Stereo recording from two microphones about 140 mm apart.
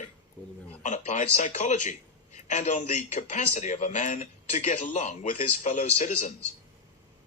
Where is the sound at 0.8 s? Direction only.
60° left (ahead or behind).